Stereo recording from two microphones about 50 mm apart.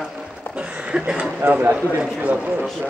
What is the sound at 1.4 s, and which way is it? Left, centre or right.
Speech, right.